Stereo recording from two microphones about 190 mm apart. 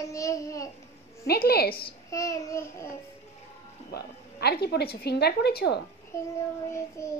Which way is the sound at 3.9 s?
55° left (ahead or behind).